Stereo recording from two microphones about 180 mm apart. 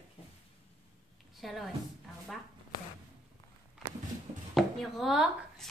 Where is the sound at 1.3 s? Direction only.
Centre (ahead or behind).